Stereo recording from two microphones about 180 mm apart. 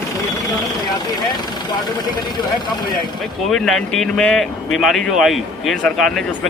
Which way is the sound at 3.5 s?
Centre (ahead or behind).